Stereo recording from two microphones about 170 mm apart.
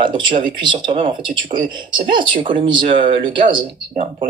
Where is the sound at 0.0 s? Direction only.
30° right (ahead or behind).